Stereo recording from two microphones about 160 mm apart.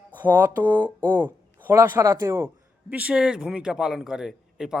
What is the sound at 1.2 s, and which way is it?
A man's voice, 15° right (ahead or behind).